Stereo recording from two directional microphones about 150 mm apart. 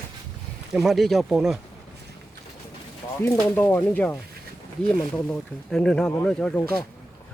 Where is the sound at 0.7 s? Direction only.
Centre (ahead or behind).